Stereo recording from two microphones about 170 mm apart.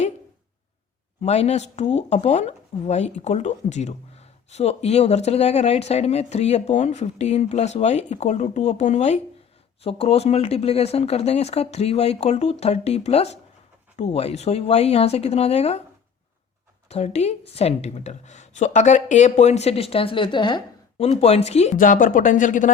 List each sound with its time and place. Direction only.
1.2 s speech: 40° left (ahead or behind)
16.9 s speech: 40° left (ahead or behind)